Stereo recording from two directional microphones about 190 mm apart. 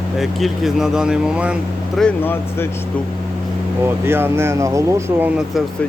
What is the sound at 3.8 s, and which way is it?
Speech, 10° right (ahead or behind).